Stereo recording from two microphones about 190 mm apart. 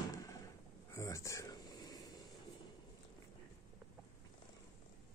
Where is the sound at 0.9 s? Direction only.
15° left (ahead or behind).